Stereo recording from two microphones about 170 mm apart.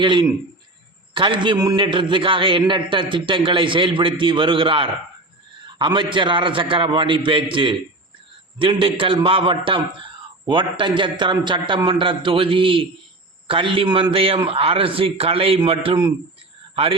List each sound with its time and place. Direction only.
0.0 s a man's voice: 30° right (ahead or behind)
5.6 s a sound: 25° right (ahead or behind)
6.1 s a man's voice: 30° right (ahead or behind)